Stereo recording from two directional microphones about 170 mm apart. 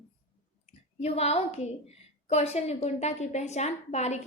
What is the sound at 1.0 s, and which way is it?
A woman's voice, 40° left (ahead or behind).